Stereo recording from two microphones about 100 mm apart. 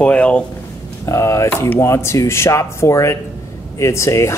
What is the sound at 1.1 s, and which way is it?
Speech, 30° left (ahead or behind).